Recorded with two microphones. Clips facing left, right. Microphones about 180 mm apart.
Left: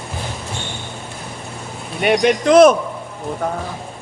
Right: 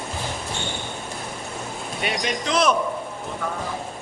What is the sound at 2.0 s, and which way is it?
Speech, 60° left (ahead or behind).